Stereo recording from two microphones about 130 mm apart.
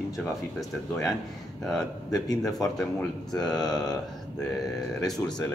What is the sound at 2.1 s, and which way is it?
Speech, 30° left (ahead or behind).